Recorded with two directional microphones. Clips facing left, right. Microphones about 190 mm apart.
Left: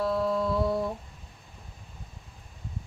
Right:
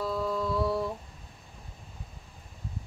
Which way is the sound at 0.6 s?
20° left (ahead or behind).